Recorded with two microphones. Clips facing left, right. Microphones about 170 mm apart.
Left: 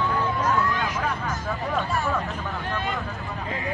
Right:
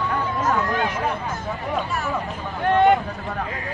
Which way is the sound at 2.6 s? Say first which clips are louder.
Right 16 dB; 60° right (ahead or behind).